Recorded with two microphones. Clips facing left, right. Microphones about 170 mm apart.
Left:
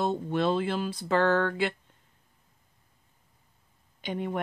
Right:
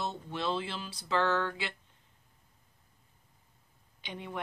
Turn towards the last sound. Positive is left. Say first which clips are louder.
# left 9 dB
turn(degrees=50)  # may be behind; listen again after turning